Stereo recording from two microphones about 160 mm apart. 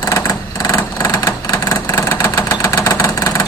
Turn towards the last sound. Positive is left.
turn(degrees=20)  # may be behind; listen again after turning